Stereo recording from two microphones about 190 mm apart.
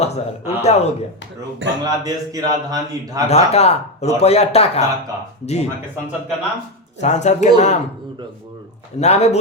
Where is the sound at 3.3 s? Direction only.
35° left (ahead or behind).